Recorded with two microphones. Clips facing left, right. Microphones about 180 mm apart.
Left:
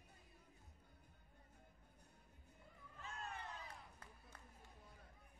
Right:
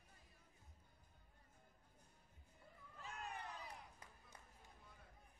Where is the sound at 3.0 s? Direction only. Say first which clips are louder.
Even; 15° right (ahead or behind).